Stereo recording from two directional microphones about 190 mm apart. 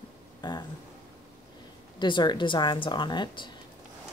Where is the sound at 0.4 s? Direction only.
20° left (ahead or behind).